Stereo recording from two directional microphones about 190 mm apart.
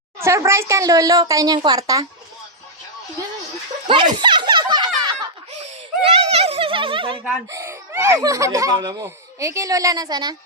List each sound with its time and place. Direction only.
0.2 s speech: 15° right (ahead or behind)
3.8 s a sound: 25° right (ahead or behind)
7.5 s speech: 15° right (ahead or behind)